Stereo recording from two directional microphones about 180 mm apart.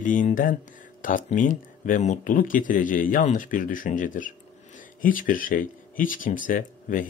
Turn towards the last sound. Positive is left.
turn(degrees=50)  # may be behind; listen again after turning